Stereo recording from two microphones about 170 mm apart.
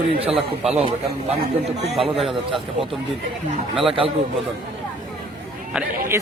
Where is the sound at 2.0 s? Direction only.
Centre (ahead or behind).